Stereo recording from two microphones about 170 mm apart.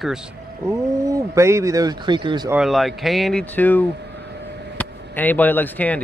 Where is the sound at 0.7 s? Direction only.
20° right (ahead or behind).